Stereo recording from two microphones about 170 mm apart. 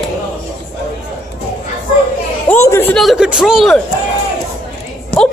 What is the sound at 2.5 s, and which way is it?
Speech, 15° left (ahead or behind).